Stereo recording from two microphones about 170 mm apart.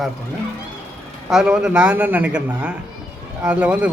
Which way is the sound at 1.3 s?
5° right (ahead or behind).